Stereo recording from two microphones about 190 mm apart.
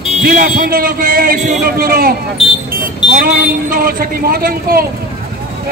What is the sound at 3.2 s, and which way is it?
A man's voice, 50° right (ahead or behind).